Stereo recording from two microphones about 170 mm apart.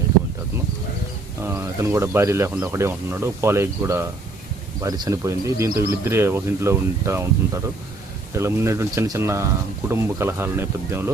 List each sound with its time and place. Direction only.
1.5 s speech: 15° right (ahead or behind)